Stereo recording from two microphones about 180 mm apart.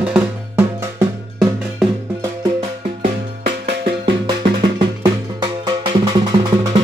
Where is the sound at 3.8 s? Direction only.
25° right (ahead or behind).